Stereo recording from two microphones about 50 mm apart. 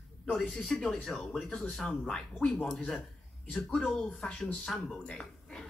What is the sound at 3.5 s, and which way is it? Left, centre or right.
Speech, centre.